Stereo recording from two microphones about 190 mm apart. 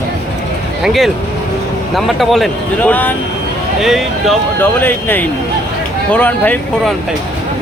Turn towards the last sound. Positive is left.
turn(degrees=10)  # may be behind; listen again after turning